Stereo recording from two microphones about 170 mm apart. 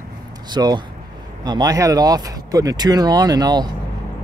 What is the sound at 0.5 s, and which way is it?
Speech, 25° right (ahead or behind).